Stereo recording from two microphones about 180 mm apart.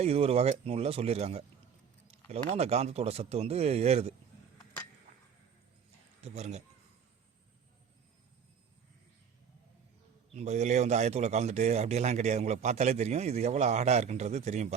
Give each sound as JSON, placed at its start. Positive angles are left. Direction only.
{"t": 0.0, "sound": "speech", "side_deg": -35}
{"t": 6.2, "sound": "speech", "side_deg": -40}
{"t": 10.3, "sound": "speech", "side_deg": -40}